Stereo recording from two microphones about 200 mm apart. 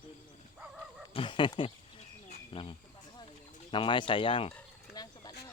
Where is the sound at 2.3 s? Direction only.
25° left (ahead or behind).